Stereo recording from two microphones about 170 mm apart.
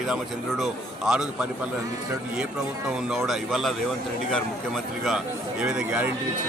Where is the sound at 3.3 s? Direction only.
Centre (ahead or behind).